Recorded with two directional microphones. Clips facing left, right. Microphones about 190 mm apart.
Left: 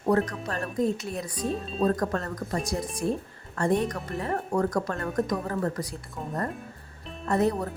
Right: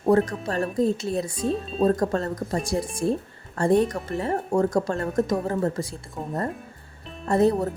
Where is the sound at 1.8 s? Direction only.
30° right (ahead or behind).